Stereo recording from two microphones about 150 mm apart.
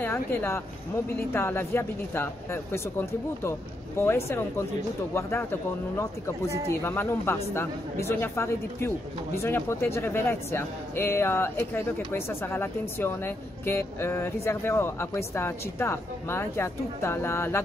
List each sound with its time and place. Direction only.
0.0 s speech: 15° left (ahead or behind)